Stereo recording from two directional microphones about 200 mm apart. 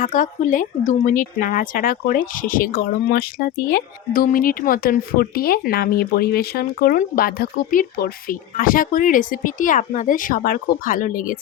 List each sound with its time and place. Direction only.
0.0 s speech: 40° left (ahead or behind)